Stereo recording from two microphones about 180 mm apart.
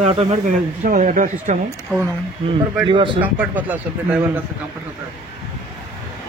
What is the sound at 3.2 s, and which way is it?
Speech, 10° right (ahead or behind).